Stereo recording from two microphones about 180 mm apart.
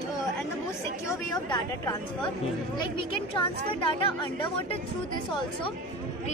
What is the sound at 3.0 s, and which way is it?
Speech, 30° left (ahead or behind).